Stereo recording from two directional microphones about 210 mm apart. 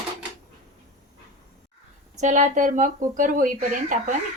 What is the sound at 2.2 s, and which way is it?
Speech, 35° right (ahead or behind).